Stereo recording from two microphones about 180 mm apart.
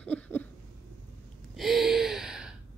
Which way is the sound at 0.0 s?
10° left (ahead or behind).